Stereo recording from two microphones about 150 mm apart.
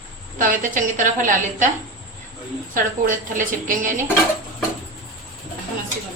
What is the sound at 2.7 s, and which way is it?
A woman's voice, 65° right (ahead or behind).